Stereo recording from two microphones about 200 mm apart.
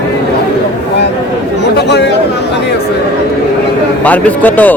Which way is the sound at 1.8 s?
60° left (ahead or behind).